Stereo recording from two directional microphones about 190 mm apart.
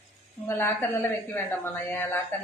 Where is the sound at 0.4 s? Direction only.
10° left (ahead or behind).